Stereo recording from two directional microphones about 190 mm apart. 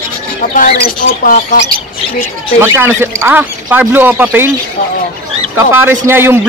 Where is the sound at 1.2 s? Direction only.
45° left (ahead or behind).